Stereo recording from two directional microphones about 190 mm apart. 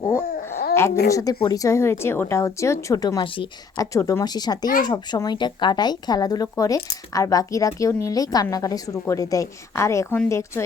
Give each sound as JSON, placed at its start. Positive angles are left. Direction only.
{"t": 0.3, "sound": "babbling", "side_deg": 55}
{"t": 1.1, "sound": "a woman's voice", "side_deg": 20}